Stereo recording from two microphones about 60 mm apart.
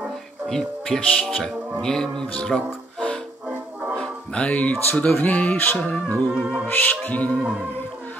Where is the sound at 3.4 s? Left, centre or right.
Right.